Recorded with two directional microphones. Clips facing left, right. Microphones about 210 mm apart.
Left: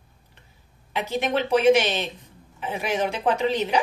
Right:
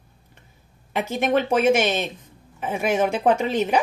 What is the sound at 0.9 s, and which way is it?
A woman's voice, 50° right (ahead or behind).